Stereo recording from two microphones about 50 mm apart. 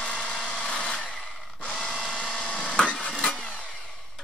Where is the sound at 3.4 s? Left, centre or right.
Left.